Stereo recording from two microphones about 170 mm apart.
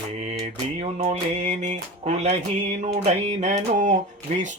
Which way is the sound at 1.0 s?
40° right (ahead or behind).